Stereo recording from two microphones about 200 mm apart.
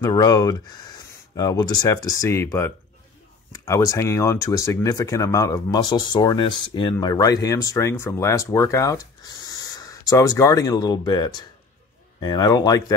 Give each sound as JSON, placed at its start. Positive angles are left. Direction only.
{"t": 0.0, "sound": "speech", "side_deg": 20}